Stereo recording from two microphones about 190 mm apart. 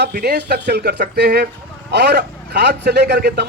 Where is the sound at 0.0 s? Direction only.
55° right (ahead or behind).